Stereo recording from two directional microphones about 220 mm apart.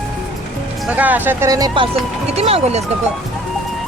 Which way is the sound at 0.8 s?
5° right (ahead or behind).